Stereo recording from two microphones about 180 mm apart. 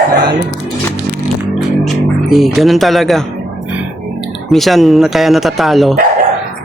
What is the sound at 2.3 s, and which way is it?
Speech, centre (ahead or behind).